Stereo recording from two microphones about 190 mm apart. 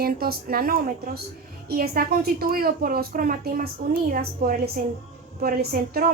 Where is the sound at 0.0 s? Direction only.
50° right (ahead or behind).